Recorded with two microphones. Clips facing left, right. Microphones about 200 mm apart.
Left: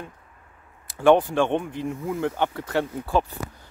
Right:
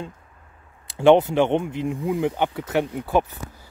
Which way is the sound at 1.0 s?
20° right (ahead or behind).